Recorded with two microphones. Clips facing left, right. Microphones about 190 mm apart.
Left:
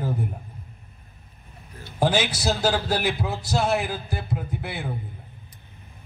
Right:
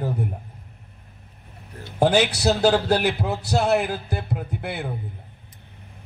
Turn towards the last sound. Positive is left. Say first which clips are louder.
# right 2 dB
turn(degrees=-60)  # may be behind; listen again after turning